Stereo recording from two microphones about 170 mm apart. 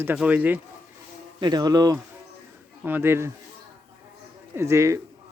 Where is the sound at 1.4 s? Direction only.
25° right (ahead or behind).